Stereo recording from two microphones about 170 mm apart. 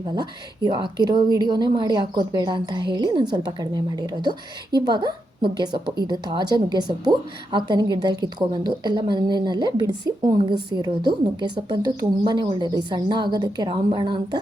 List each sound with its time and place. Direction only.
0.0 s a woman's voice: 25° right (ahead or behind)